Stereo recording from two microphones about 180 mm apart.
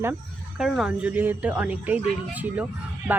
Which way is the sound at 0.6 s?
Centre (ahead or behind).